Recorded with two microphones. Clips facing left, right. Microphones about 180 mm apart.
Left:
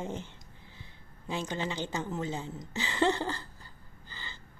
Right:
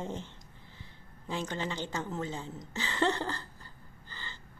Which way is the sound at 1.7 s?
10° left (ahead or behind).